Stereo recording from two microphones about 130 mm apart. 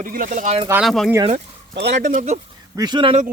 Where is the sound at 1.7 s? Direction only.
65° right (ahead or behind).